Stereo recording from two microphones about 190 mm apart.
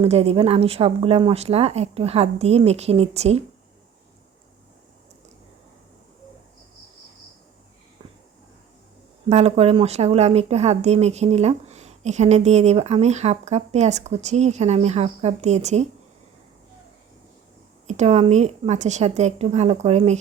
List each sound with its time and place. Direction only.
0.0 s a woman's voice: 35° right (ahead or behind)
9.3 s a woman's voice: 35° right (ahead or behind)
17.8 s a woman's voice: 35° right (ahead or behind)